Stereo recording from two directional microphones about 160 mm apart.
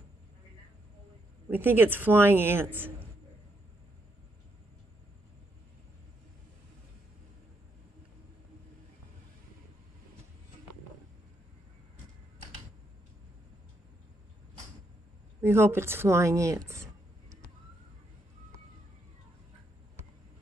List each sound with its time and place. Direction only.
1.5 s speech: 15° right (ahead or behind)
15.4 s speech: 15° right (ahead or behind)